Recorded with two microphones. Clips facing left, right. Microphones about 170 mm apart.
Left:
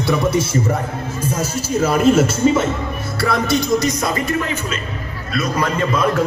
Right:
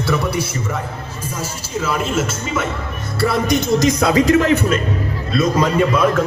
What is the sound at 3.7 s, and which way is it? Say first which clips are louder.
Speech: right 4 dB; 85° right.